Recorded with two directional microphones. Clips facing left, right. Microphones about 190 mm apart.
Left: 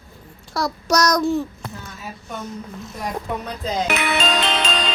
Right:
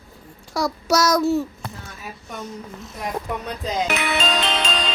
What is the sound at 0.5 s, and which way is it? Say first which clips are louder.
Child singing: even; 10° right (ahead or behind).